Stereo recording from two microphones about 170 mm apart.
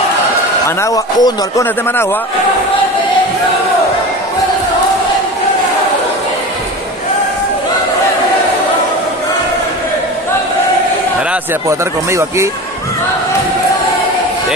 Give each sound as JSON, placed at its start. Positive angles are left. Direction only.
{"t": 0.7, "sound": "a man's voice", "side_deg": 20}
{"t": 12.1, "sound": "a man's voice", "side_deg": -15}